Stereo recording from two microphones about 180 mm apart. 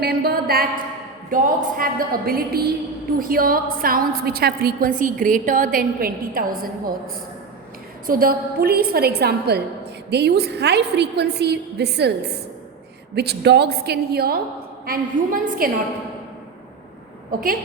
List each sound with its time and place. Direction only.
0.0 s a woman's voice: 60° right (ahead or behind)
8.0 s a woman's voice: 50° right (ahead or behind)
14.8 s a woman's voice: 50° right (ahead or behind)